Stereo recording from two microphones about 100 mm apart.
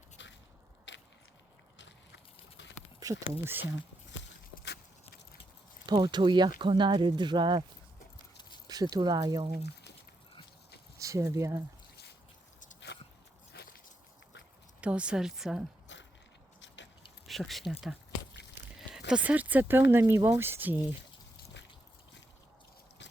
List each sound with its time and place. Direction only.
3.0 s speech: 35° right (ahead or behind)
3.4 s speech: 20° right (ahead or behind)
5.8 s speech: 45° right (ahead or behind)
8.6 s speech: 40° right (ahead or behind)
10.9 s speech: 35° right (ahead or behind)
14.8 s a woman's voice: 10° right (ahead or behind)
17.2 s speech: centre (ahead or behind)
18.8 s a sound: 5° right (ahead or behind)
19.2 s speech: 15° right (ahead or behind)